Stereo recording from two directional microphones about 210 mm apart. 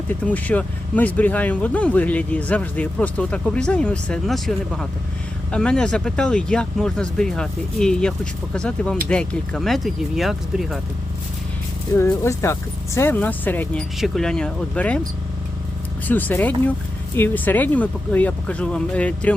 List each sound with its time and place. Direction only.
0.1 s speech: 5° left (ahead or behind)
11.9 s speech: 15° left (ahead or behind)
16.0 s speech: 10° left (ahead or behind)